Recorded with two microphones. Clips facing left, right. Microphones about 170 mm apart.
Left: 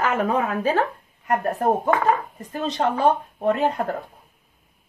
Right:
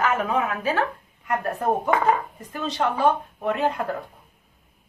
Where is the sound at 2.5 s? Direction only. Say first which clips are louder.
Left 3 dB; 45° left (ahead or behind).